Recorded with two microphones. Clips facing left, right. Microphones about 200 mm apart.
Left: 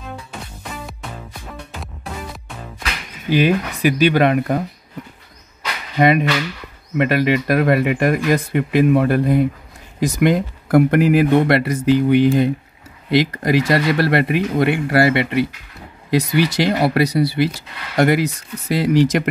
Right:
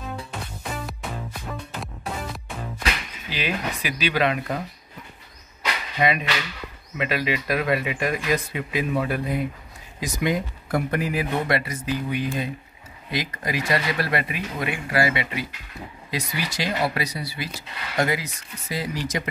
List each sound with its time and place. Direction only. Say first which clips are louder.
0.3 s music: even; centre (ahead or behind)
3.3 s speech: left 12 dB; 50° left (ahead or behind)
5.9 s speech: left 9 dB; 55° left (ahead or behind); by 19.2 s 75° left (ahead or behind)